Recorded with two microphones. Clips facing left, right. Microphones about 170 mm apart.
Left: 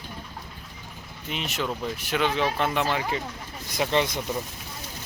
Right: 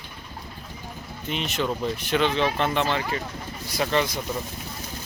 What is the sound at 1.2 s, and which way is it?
Speech, 5° left (ahead or behind).